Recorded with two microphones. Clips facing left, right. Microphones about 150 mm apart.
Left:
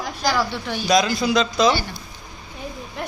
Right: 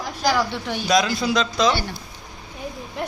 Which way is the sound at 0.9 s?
Centre (ahead or behind).